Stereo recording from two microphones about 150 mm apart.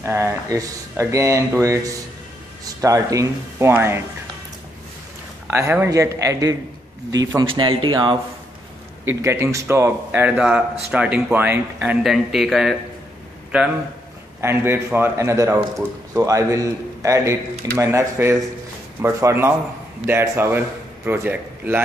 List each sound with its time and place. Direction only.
0.0 s speech: 15° right (ahead or behind)
5.5 s speech: 15° right (ahead or behind); by 8.2 s 35° right (ahead or behind)
9.0 s a man's voice: 20° right (ahead or behind); by 12.7 s centre (ahead or behind)
14.4 s a man's voice: 15° right (ahead or behind)